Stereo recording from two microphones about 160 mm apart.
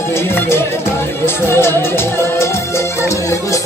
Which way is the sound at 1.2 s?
15° left (ahead or behind).